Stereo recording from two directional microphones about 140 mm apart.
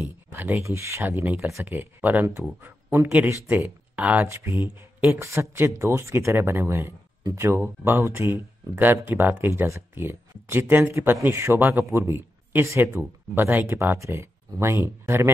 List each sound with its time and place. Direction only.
0.0 s speech: 15° right (ahead or behind)